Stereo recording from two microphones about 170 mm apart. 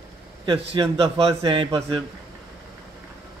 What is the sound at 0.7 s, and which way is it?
A man's voice, 35° right (ahead or behind).